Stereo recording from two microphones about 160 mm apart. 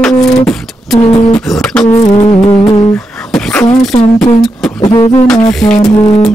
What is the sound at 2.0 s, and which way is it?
Humming, 35° left (ahead or behind).